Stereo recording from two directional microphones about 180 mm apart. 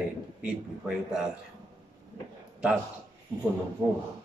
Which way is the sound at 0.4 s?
5° right (ahead or behind).